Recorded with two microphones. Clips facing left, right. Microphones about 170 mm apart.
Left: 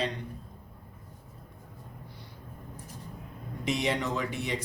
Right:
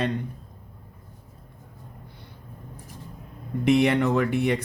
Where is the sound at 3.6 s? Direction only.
60° right (ahead or behind).